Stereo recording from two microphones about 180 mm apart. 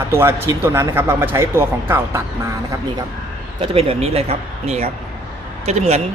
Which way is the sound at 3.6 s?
30° right (ahead or behind).